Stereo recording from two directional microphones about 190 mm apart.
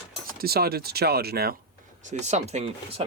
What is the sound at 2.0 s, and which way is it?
Speech, 35° right (ahead or behind).